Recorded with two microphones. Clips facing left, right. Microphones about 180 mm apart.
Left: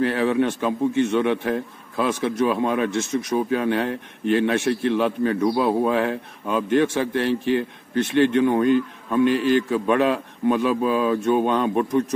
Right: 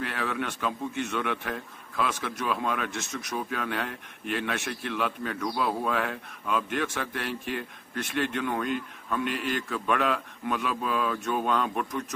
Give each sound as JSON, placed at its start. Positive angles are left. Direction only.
{"t": 0.0, "sound": "a man's voice", "side_deg": 30}